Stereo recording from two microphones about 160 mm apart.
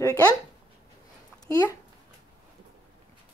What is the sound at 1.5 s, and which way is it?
Speech, 20° left (ahead or behind).